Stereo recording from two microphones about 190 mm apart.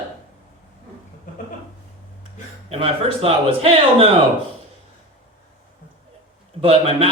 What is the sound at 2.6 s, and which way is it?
Speech, 30° right (ahead or behind).